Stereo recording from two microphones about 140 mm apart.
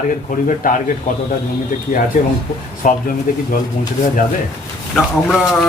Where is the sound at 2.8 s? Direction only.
70° left (ahead or behind).